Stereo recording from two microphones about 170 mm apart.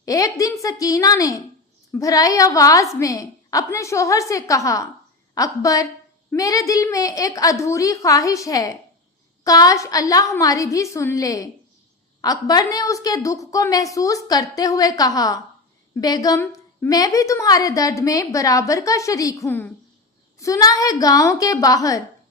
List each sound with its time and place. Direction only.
0.0 s a woman's voice: 20° left (ahead or behind)